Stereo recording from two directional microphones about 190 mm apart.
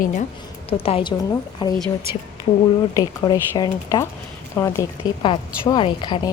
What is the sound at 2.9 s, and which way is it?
A woman's voice, 20° left (ahead or behind).